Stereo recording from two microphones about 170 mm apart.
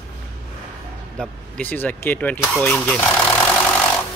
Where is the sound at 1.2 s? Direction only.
10° left (ahead or behind).